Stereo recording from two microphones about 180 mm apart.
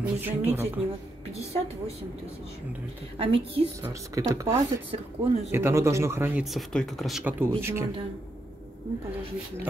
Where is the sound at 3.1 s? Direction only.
30° right (ahead or behind).